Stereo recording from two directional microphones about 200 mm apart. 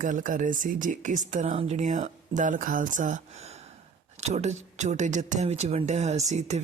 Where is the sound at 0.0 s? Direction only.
40° right (ahead or behind).